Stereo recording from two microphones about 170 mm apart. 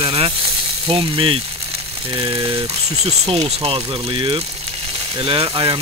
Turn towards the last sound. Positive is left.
turn(degrees=-25)  # may be behind; listen again after turning